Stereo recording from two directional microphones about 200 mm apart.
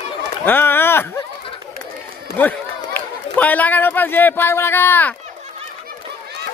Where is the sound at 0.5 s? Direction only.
10° left (ahead or behind).